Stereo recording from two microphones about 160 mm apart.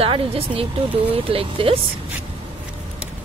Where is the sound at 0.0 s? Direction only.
35° right (ahead or behind).